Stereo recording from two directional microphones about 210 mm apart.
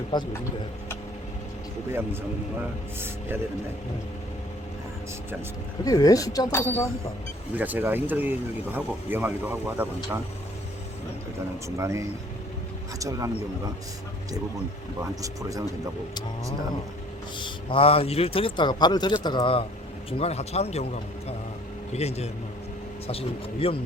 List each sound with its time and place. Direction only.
0.1 s a man's voice: 20° left (ahead or behind)
5.8 s speech: 15° left (ahead or behind)
7.5 s speech: 10° right (ahead or behind)
11.8 s speech: 15° right (ahead or behind)
15.2 s speech: 15° right (ahead or behind)
17.3 s a man's voice: 25° left (ahead or behind)
21.9 s a man's voice: 30° left (ahead or behind)